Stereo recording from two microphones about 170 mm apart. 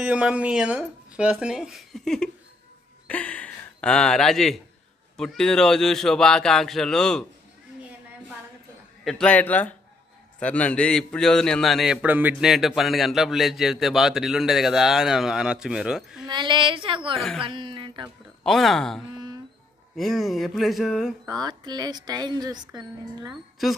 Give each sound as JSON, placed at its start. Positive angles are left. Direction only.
{"t": 0.0, "sound": "a man's voice", "side_deg": -5}
{"t": 9.0, "sound": "a man's voice", "side_deg": 5}
{"t": 16.3, "sound": "a woman's voice", "side_deg": -25}
{"t": 18.4, "sound": "a man's voice", "side_deg": 0}
{"t": 21.3, "sound": "speech", "side_deg": -25}